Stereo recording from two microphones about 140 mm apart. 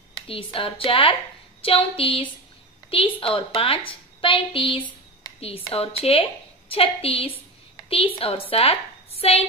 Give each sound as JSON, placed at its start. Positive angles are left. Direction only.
{"t": 0.3, "sound": "a woman's voice", "side_deg": 40}